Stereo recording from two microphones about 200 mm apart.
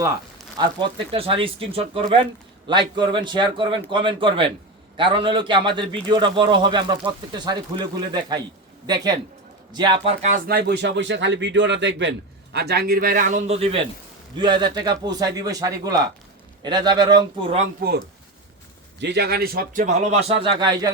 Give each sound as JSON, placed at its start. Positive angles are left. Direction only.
{"t": 0.6, "sound": "speech", "side_deg": -25}
{"t": 9.7, "sound": "speech", "side_deg": -25}
{"t": 12.5, "sound": "speech", "side_deg": -55}
{"t": 17.7, "sound": "speech", "side_deg": -55}
{"t": 20.4, "sound": "speech", "side_deg": -20}